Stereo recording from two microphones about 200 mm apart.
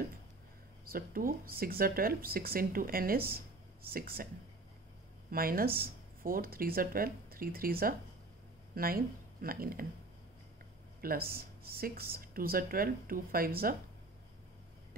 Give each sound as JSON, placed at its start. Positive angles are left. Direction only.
{"t": 0.8, "sound": "speech", "side_deg": -45}
{"t": 5.3, "sound": "a woman's voice", "side_deg": -45}
{"t": 11.0, "sound": "speech", "side_deg": -50}